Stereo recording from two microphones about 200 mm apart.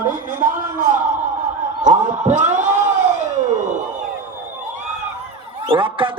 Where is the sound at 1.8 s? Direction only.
35° right (ahead or behind).